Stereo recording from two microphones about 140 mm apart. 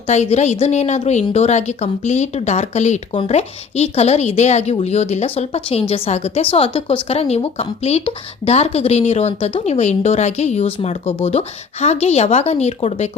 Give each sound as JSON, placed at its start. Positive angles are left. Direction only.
{"t": 0.1, "sound": "a woman's voice", "side_deg": 55}
{"t": 3.1, "sound": "a woman's voice", "side_deg": 45}